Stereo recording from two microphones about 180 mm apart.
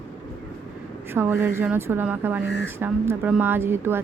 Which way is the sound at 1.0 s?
10° right (ahead or behind).